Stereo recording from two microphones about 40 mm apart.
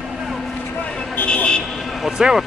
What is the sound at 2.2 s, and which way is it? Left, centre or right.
Speech, centre.